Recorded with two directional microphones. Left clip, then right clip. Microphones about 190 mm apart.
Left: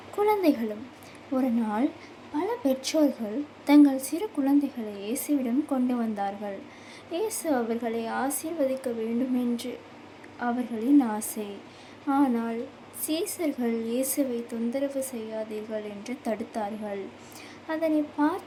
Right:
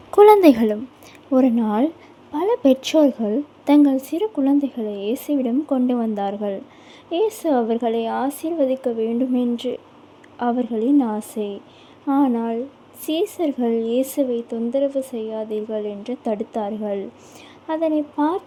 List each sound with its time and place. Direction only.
0.2 s a woman's voice: 50° right (ahead or behind)
1.3 s speech: 40° right (ahead or behind)
10.4 s speech: 35° right (ahead or behind)